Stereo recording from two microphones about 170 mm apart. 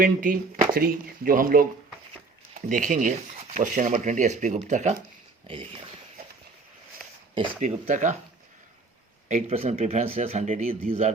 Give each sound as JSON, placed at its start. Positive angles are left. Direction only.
{"t": 0.0, "sound": "speech", "side_deg": -55}
{"t": 5.5, "sound": "speech", "side_deg": -30}
{"t": 7.6, "sound": "speech", "side_deg": -45}
{"t": 9.3, "sound": "speech", "side_deg": -40}